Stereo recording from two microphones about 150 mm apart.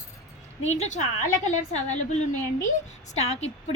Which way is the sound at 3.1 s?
45° left (ahead or behind).